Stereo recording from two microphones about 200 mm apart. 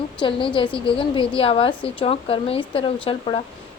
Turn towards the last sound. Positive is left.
turn(degrees=25)  # may be behind; listen again after turning